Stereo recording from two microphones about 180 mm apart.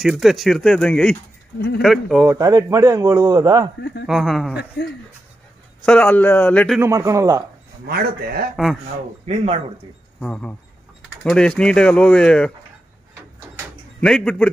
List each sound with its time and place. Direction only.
0.0 s speech: centre (ahead or behind)
2.2 s speech: 20° right (ahead or behind)
4.0 s speech: centre (ahead or behind)
5.9 s a man's voice: 10° left (ahead or behind)
6.8 s a man's voice: 15° right (ahead or behind)
7.8 s speech: 60° right (ahead or behind)
9.2 s speech: 35° right (ahead or behind)
10.2 s a man's voice: 5° left (ahead or behind)
14.0 s speech: 5° left (ahead or behind)